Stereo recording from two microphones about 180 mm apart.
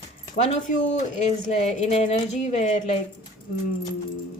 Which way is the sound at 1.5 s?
35° left (ahead or behind).